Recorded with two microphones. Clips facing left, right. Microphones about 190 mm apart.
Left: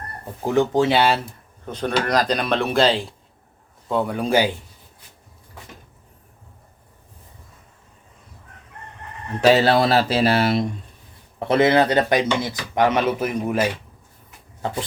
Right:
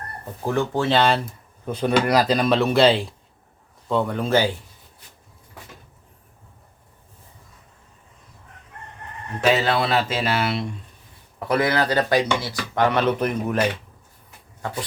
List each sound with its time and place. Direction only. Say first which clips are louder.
0.4 s speech: left 4 dB; 15° left (ahead or behind)
1.6 s speech: right 3 dB; 10° right (ahead or behind); by 4.5 s 15° left (ahead or behind)
9.4 s speech: left 5 dB; 35° left (ahead or behind)
11.3 s speech: left 5 dB; 25° left (ahead or behind); by 13.7 s 5° left (ahead or behind)